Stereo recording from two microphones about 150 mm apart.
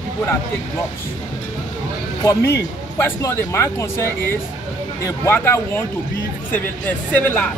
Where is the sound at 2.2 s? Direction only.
15° left (ahead or behind).